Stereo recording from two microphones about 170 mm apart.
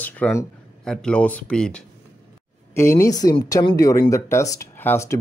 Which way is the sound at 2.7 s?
15° left (ahead or behind).